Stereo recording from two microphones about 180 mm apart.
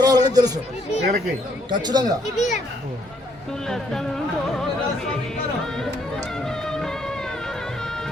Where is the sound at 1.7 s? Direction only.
25° right (ahead or behind).